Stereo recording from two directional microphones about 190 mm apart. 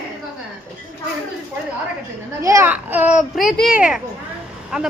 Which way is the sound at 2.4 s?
15° right (ahead or behind).